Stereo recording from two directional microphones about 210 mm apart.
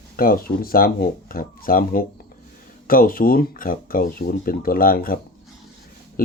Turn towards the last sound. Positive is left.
turn(degrees=45)  # may be behind; listen again after turning